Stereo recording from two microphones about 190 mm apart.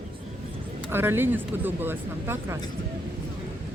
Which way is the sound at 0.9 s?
10° right (ahead or behind).